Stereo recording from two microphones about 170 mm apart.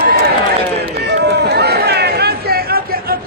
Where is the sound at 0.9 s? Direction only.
80° right.